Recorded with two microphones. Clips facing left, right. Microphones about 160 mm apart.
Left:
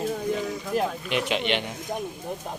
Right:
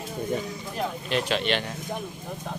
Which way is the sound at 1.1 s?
15° left (ahead or behind).